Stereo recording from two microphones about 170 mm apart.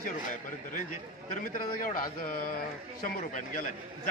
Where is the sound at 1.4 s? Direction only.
55° left (ahead or behind).